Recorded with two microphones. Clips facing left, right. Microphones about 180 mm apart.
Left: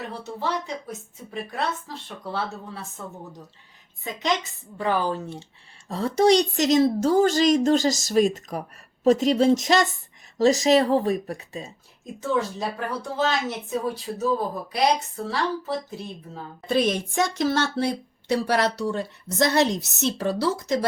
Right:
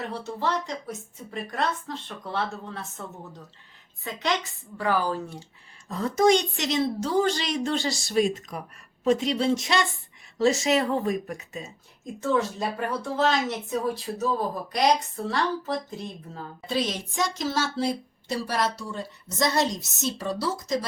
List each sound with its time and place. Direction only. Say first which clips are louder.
0.1 s a woman's voice: even; centre (ahead or behind)
4.0 s a woman's voice: left 2 dB; 20° left (ahead or behind)
12.2 s a woman's voice: even; centre (ahead or behind)
16.6 s a woman's voice: left 6 dB; 55° left (ahead or behind)